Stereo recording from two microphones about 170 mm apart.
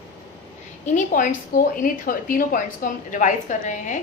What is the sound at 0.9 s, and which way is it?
A woman's voice, 50° left (ahead or behind).